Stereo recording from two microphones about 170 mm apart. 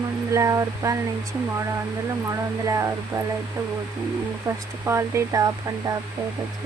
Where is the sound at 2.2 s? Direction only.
20° right (ahead or behind).